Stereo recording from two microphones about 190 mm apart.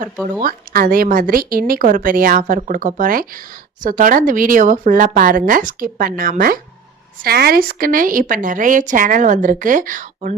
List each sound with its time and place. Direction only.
0.0 s speech: 45° right (ahead or behind)